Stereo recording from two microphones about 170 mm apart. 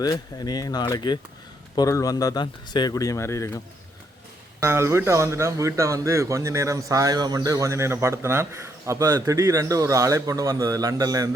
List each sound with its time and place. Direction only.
0.0 s speech: 20° left (ahead or behind)
4.6 s a man's voice: 15° right (ahead or behind)